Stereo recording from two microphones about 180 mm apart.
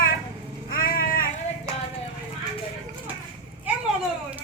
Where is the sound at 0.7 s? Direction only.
55° left (ahead or behind).